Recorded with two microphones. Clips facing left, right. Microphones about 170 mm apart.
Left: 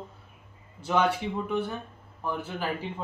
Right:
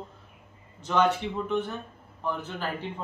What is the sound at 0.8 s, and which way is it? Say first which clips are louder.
Speech: right 1 dB; 10° left (ahead or behind).